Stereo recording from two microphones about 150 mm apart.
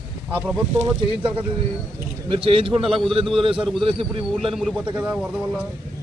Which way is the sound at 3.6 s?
Centre (ahead or behind).